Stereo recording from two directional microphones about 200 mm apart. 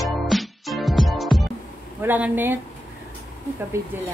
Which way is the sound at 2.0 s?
10° right (ahead or behind).